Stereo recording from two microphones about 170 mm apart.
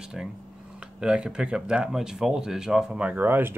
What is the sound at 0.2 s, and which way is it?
Speech, 5° right (ahead or behind).